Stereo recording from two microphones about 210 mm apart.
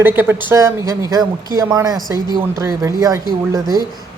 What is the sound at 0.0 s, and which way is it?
Speech, 10° right (ahead or behind).